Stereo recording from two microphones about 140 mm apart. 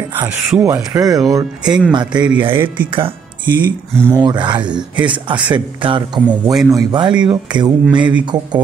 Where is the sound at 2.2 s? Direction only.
10° right (ahead or behind).